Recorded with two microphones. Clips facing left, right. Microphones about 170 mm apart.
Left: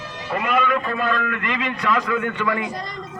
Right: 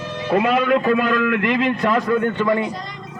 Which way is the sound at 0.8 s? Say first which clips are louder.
Right 6 dB; 70° right (ahead or behind).